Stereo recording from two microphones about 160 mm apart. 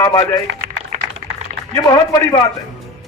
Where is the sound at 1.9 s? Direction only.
25° left (ahead or behind).